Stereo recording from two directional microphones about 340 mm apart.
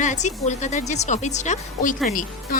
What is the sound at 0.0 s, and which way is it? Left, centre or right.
Speech, left.